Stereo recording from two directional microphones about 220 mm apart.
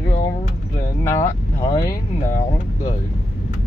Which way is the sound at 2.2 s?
35° left (ahead or behind).